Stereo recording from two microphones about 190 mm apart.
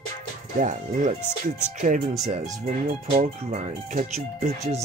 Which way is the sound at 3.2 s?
40° right (ahead or behind).